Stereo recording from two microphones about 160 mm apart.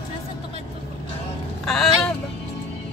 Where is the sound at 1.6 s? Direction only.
5° left (ahead or behind).